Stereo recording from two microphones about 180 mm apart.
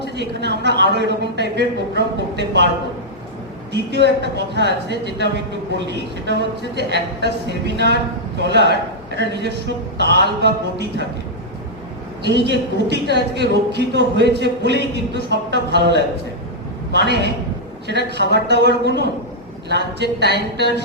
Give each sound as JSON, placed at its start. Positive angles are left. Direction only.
{"t": 0.0, "sound": "a man's voice", "side_deg": -70}
{"t": 3.7, "sound": "a man's voice", "side_deg": -70}
{"t": 12.2, "sound": "a man's voice", "side_deg": -70}